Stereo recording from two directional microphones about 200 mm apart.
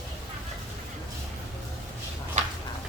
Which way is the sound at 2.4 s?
35° right (ahead or behind).